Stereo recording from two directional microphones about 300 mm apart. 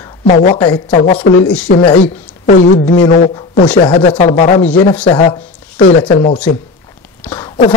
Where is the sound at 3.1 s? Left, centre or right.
Left.